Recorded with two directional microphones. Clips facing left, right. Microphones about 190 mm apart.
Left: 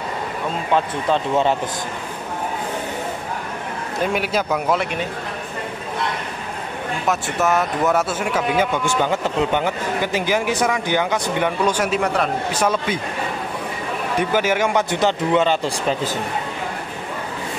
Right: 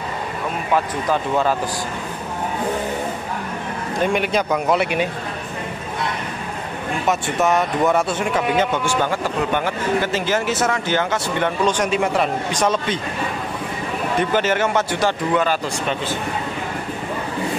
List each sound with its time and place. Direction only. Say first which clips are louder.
0.7 s a man's voice: left 1 dB; 25° left (ahead or behind)
4.0 s speech: right 2 dB; 5° left (ahead or behind)
7.1 s speech: right 1 dB; centre (ahead or behind)
12.6 s speech: right 1 dB; 10° left (ahead or behind)
14.3 s a man's voice: left 1 dB; 10° left (ahead or behind); by 16.2 s 35° left (ahead or behind)